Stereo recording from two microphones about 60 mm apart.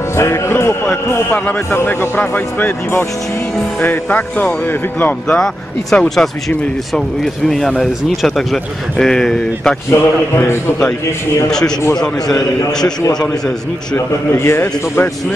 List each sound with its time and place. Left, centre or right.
0.2 s a man's voice: left
1.3 s speech: left
5.4 s a man's voice: centre
7.4 s a man's voice: centre
9.8 s a man's voice: left
12.0 s a man's voice: centre
13.9 s a man's voice: left